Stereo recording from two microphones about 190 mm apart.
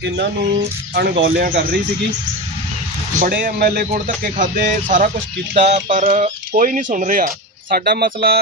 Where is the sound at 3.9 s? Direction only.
40° right (ahead or behind).